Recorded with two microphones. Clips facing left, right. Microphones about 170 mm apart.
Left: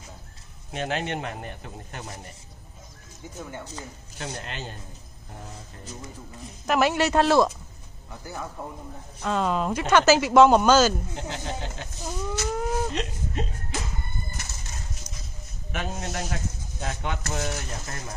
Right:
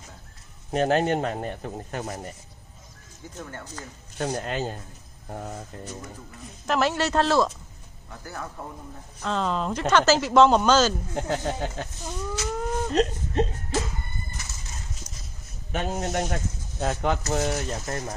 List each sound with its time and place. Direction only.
0.7 s speech: 40° right (ahead or behind)
3.3 s speech: 10° left (ahead or behind)
4.4 s speech: 45° right (ahead or behind)
6.7 s speech: 10° left (ahead or behind)
11.1 s speech: 50° right (ahead or behind)
12.1 s a sound: 5° left (ahead or behind)
12.9 s speech: 35° right (ahead or behind)
15.7 s speech: 30° right (ahead or behind)
16.8 s speech: 45° right (ahead or behind)